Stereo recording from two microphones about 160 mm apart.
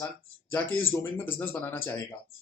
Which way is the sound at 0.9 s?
15° left (ahead or behind).